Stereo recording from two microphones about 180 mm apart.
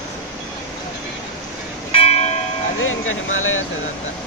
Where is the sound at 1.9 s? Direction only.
35° left (ahead or behind).